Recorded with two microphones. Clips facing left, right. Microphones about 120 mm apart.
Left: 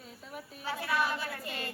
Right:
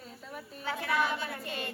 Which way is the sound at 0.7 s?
20° right (ahead or behind).